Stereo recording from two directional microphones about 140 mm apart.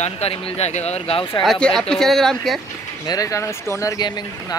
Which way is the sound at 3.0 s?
25° left (ahead or behind).